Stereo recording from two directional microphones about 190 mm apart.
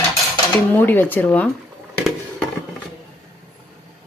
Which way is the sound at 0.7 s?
10° left (ahead or behind).